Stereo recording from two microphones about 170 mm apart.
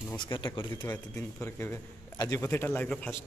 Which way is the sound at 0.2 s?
25° left (ahead or behind).